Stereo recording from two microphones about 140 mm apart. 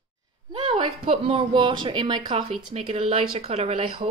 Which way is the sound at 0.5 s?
35° right (ahead or behind).